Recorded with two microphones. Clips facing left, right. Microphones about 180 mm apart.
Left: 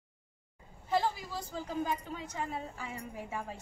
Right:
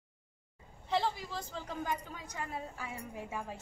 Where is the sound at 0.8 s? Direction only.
5° left (ahead or behind).